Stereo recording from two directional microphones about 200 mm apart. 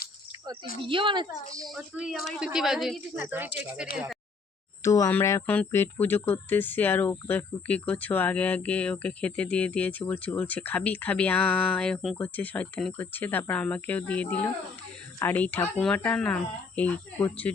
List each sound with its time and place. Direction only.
0.8 s a woman's voice: 25° right (ahead or behind)
1.6 s speech: centre (ahead or behind)
4.8 s speech: 15° left (ahead or behind)